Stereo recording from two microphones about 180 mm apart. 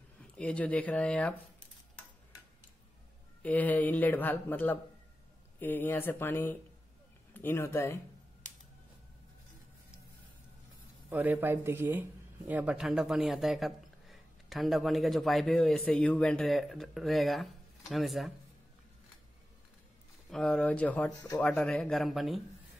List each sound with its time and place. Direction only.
0.2 s speech: 5° left (ahead or behind)
3.4 s speech: 10° left (ahead or behind)
11.1 s speech: 10° right (ahead or behind)
20.2 s speech: 5° left (ahead or behind)